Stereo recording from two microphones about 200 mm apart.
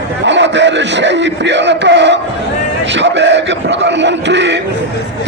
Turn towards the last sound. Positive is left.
turn(degrees=-60)  # may be behind; listen again after turning